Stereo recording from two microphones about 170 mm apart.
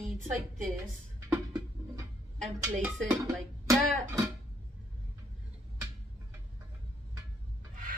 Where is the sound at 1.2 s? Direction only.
15° right (ahead or behind).